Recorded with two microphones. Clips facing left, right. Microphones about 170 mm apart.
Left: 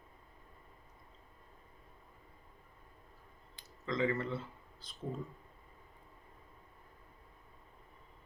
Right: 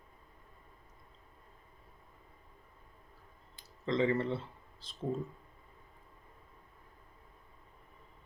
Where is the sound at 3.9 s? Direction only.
30° right (ahead or behind).